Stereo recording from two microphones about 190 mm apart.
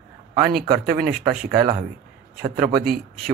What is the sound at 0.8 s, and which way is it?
A man's voice, 45° right (ahead or behind).